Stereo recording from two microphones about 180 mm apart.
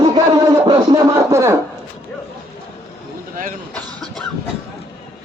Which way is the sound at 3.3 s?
50° right (ahead or behind).